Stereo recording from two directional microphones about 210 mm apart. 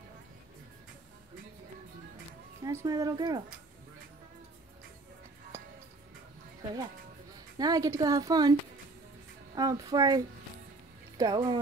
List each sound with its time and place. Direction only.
2.6 s a woman's voice: 15° right (ahead or behind)
7.5 s a woman's voice: 20° right (ahead or behind)
9.6 s a woman's voice: 15° right (ahead or behind)